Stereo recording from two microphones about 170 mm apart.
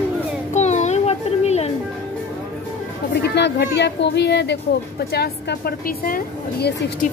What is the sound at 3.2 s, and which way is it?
Speech, 80° left.